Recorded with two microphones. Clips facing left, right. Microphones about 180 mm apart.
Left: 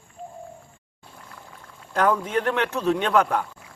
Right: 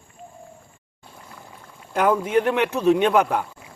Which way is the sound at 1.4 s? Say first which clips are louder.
Right 1 dB; 5° right (ahead or behind).